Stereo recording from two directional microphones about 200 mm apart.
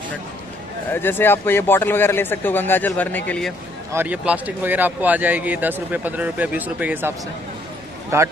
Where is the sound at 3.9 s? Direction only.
10° right (ahead or behind).